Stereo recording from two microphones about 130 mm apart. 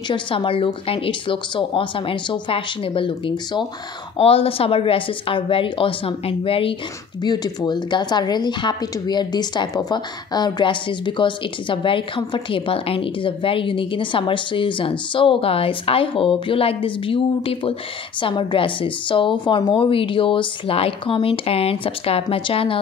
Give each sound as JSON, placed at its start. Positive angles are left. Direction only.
{"t": 0.1, "sound": "a woman's voice", "side_deg": 40}
{"t": 7.2, "sound": "a woman's voice", "side_deg": 35}